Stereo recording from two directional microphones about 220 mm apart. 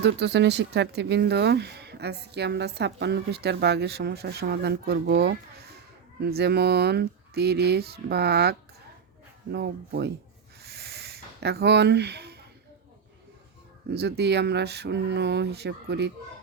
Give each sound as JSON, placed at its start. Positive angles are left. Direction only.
{"t": 0.0, "sound": "speech", "side_deg": -50}
{"t": 10.6, "sound": "a sound", "side_deg": -45}
{"t": 13.9, "sound": "speech", "side_deg": -50}